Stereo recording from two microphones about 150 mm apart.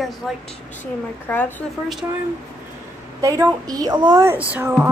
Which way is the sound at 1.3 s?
15° left (ahead or behind).